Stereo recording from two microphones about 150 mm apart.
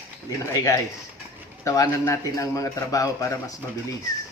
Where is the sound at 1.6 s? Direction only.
20° left (ahead or behind).